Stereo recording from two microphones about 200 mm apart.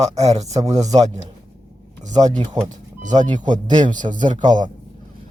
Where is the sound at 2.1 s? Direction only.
20° right (ahead or behind).